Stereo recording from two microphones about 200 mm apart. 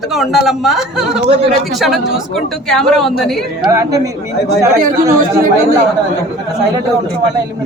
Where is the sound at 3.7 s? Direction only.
15° right (ahead or behind).